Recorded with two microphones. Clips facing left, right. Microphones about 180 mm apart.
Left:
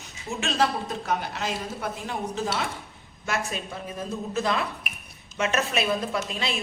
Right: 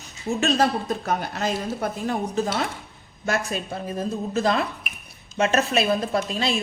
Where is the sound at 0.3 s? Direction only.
40° right (ahead or behind).